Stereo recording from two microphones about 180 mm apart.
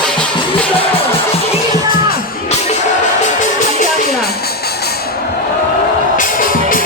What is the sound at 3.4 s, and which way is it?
Music, 55° left (ahead or behind).